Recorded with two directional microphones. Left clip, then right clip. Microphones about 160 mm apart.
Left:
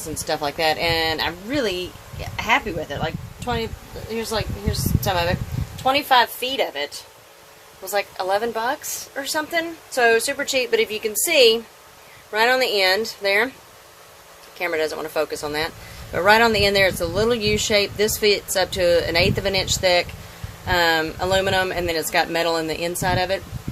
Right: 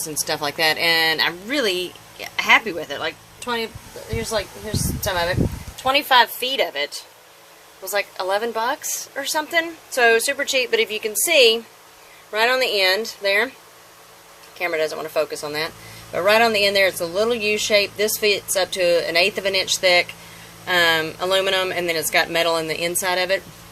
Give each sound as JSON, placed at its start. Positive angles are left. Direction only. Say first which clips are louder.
{"t": 0.1, "sound": "a woman's voice", "louder": "left 1 dB", "side_deg": 10}
{"t": 14.6, "sound": "speech", "louder": "right 1 dB", "side_deg": 25}